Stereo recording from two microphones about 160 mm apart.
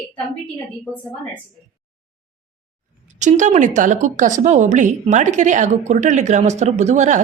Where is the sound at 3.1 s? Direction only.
50° right (ahead or behind).